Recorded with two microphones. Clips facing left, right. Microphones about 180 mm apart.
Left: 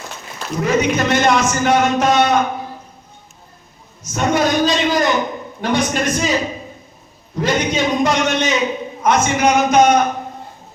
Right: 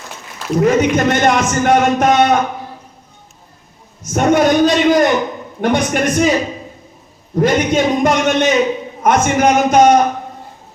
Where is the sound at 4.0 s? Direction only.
55° right (ahead or behind).